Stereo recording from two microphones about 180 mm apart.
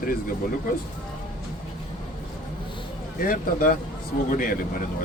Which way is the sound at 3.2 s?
50° left (ahead or behind).